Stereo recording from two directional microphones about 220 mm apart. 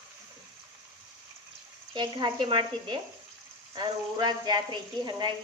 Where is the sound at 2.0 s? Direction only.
20° right (ahead or behind).